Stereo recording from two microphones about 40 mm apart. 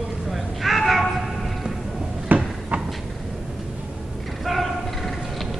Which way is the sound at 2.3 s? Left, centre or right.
Right.